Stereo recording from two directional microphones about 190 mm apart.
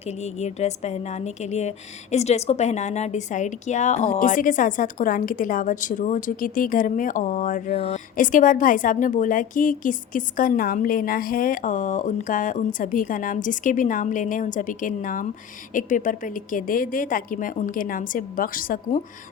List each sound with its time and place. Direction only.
0.2 s a woman's voice: 35° left (ahead or behind)